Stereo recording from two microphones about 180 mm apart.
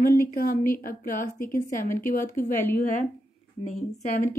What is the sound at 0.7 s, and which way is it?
A woman's voice, 50° left (ahead or behind).